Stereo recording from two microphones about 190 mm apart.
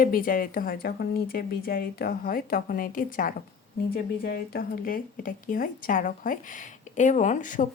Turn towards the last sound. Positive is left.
turn(degrees=45)  # may be behind; listen again after turning